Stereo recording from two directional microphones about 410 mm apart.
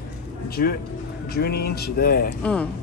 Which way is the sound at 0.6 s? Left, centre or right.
Left.